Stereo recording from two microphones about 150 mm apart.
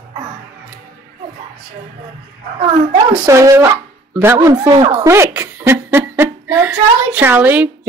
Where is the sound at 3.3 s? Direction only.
20° right (ahead or behind).